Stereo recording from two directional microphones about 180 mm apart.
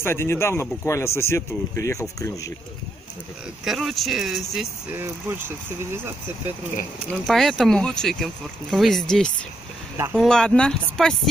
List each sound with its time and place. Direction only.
0.0 s a man's voice: 15° left (ahead or behind)
3.6 s speech: centre (ahead or behind)
4.9 s speech: 10° right (ahead or behind)
7.1 s speech: centre (ahead or behind)